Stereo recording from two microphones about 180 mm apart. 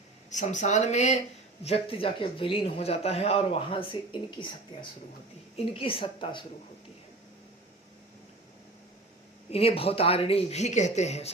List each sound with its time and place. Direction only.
0.3 s a woman's voice: 45° left (ahead or behind)
9.5 s speech: 35° left (ahead or behind)